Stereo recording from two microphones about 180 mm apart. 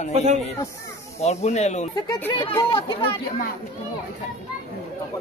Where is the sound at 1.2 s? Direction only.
35° left (ahead or behind).